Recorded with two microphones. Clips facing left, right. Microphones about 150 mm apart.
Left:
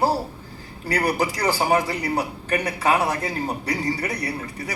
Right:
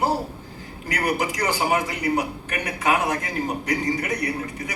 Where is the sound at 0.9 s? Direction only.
35° left (ahead or behind).